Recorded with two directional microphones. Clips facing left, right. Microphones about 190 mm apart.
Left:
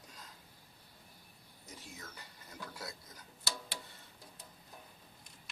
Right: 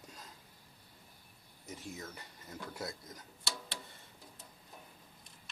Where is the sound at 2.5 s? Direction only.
25° right (ahead or behind).